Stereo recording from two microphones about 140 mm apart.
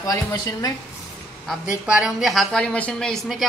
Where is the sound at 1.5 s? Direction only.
10° right (ahead or behind).